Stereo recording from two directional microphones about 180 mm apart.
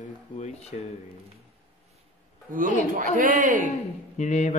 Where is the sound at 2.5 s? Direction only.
50° right (ahead or behind).